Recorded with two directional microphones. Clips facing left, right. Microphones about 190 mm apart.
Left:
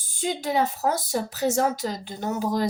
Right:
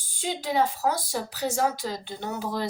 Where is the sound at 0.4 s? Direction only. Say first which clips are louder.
Even; 45° left (ahead or behind).